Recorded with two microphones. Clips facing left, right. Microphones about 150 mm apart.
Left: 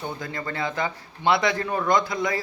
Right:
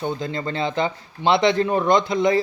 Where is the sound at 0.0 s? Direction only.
25° right (ahead or behind).